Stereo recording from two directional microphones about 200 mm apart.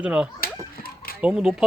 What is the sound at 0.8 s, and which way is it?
Chicken, 50° left (ahead or behind).